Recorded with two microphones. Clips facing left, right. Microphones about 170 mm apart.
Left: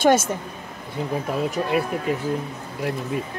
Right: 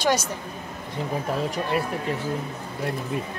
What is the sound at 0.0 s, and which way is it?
Speech, 50° left (ahead or behind).